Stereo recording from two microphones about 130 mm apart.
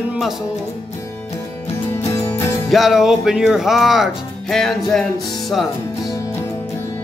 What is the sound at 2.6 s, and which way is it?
Music, centre (ahead or behind).